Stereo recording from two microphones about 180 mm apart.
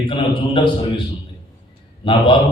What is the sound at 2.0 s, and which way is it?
Speech, 25° left (ahead or behind).